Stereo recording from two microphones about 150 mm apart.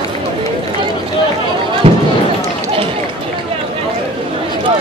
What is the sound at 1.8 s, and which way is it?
Run, 40° right (ahead or behind).